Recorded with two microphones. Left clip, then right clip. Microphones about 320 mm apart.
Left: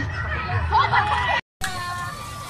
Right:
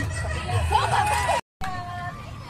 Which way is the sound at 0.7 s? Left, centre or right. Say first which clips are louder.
Left 3 dB; right.